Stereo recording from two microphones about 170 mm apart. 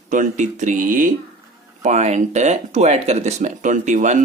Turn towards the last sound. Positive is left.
turn(degrees=-45)  # may be behind; listen again after turning